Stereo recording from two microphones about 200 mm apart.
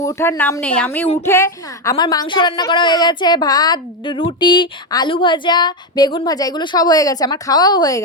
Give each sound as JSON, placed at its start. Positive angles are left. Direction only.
{"t": 0.0, "sound": "a woman's voice", "side_deg": 15}